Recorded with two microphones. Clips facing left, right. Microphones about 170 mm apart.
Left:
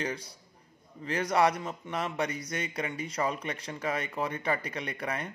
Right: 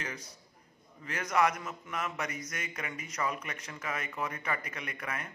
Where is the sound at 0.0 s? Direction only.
30° left (ahead or behind).